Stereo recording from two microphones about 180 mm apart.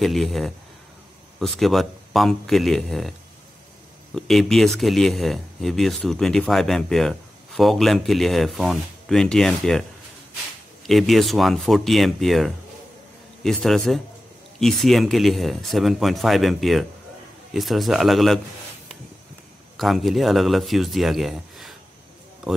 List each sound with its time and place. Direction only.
0.0 s speech: centre (ahead or behind)
19.8 s speech: centre (ahead or behind)